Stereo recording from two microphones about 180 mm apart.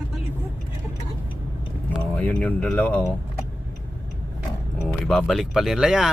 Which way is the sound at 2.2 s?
10° left (ahead or behind).